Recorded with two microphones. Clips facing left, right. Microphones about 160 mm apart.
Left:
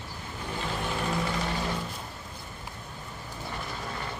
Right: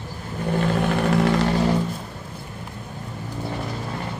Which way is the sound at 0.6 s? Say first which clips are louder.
Right 10 dB; 65° right (ahead or behind).